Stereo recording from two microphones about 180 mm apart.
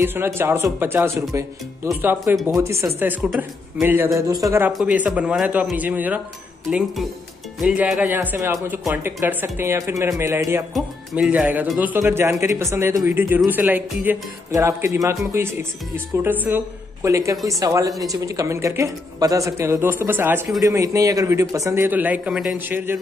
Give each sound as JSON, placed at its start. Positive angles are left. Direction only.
{"t": 0.0, "sound": "a woman's voice", "side_deg": -10}
{"t": 3.2, "sound": "a man's voice", "side_deg": 0}
{"t": 3.8, "sound": "a woman's voice", "side_deg": -10}
{"t": 7.6, "sound": "a woman's voice", "side_deg": -5}